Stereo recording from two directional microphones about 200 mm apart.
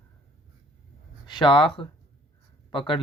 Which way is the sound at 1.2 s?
20° left (ahead or behind).